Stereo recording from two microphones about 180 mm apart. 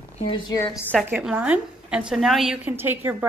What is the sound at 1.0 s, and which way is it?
A woman's voice, 10° right (ahead or behind).